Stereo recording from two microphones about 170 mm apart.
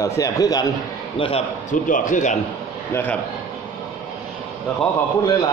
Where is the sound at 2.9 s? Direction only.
10° left (ahead or behind).